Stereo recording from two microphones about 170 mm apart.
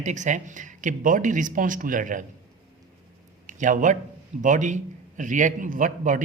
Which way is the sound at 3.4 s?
50° right (ahead or behind).